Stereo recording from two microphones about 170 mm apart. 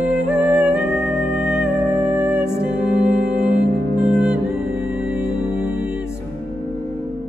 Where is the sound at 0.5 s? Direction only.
5° right (ahead or behind).